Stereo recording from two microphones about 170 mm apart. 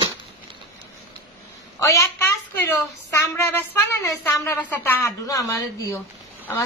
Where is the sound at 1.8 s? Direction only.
15° left (ahead or behind).